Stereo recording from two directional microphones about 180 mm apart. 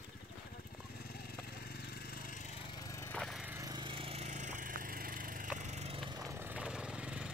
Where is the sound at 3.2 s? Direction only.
Centre (ahead or behind).